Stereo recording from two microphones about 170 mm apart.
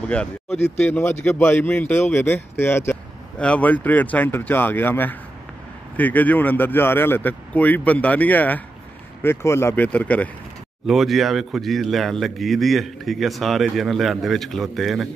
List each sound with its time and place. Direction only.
0.5 s speech: 40° left (ahead or behind)
0.7 s speech: 10° left (ahead or behind)